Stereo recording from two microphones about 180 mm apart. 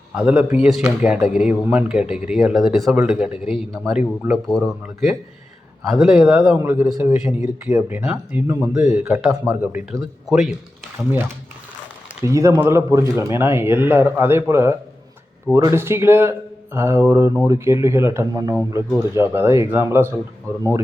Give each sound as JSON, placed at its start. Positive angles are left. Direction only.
{"t": 0.2, "sound": "speech", "side_deg": -10}
{"t": 9.9, "sound": "speech", "side_deg": 0}
{"t": 12.2, "sound": "speech", "side_deg": -15}